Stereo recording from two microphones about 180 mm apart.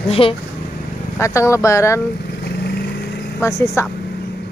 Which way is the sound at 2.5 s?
65° left (ahead or behind).